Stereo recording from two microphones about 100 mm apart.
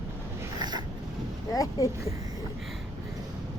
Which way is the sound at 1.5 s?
35° left (ahead or behind).